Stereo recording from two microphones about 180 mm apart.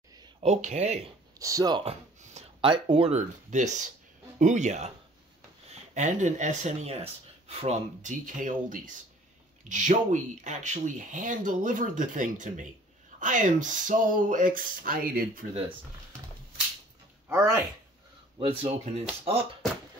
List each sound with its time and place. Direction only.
0.4 s speech: 40° right (ahead or behind)
1.4 s a sound: 20° right (ahead or behind); by 2.7 s 35° right (ahead or behind)
2.7 s speech: 30° right (ahead or behind); by 15.2 s 55° right (ahead or behind)
17.3 s speech: 20° right (ahead or behind)
18.6 s speech: 35° right (ahead or behind)